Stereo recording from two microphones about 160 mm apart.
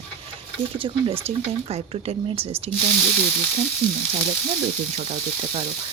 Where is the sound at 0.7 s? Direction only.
35° right (ahead or behind).